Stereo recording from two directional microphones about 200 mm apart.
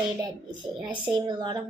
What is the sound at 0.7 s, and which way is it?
Speech, 5° right (ahead or behind).